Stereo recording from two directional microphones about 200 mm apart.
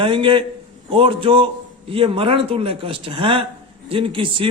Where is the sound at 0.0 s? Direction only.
25° right (ahead or behind).